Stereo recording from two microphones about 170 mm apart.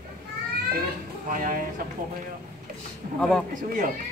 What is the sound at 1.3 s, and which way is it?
Speech, 55° right (ahead or behind).